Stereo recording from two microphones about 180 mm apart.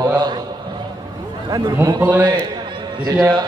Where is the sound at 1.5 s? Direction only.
15° right (ahead or behind).